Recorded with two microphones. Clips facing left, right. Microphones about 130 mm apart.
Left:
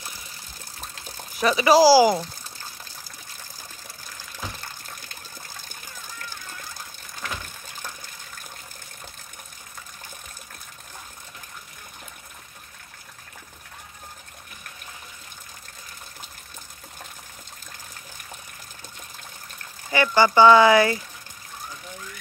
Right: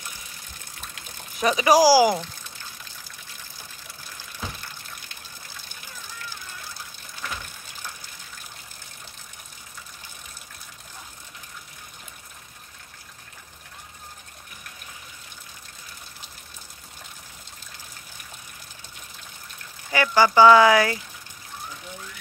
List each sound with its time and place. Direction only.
1.4 s speech: 15° right (ahead or behind)
4.6 s water: 45° left (ahead or behind)
19.9 s a sound: 5° right (ahead or behind)
20.3 s speech: 5° right (ahead or behind)